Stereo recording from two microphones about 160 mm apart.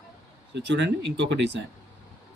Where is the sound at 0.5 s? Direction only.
90° right.